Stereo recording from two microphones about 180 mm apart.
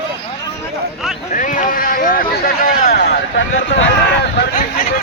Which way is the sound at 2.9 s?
85° left.